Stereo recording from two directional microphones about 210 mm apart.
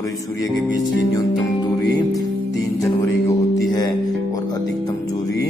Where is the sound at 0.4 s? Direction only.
15° left (ahead or behind).